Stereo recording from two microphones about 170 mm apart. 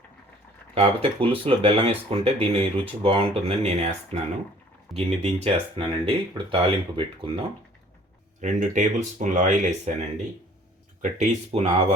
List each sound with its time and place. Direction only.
0.7 s speech: 35° right (ahead or behind)
8.4 s speech: 45° right (ahead or behind)
11.0 s speech: 45° right (ahead or behind)